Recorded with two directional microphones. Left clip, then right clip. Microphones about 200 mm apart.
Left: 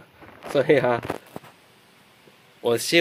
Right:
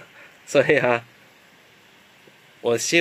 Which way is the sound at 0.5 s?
5° right (ahead or behind).